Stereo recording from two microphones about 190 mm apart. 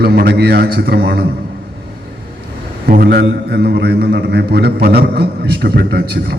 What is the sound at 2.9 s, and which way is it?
A man's voice, 55° right (ahead or behind).